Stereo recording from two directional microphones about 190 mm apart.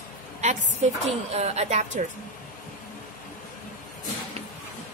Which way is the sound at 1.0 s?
35° right (ahead or behind).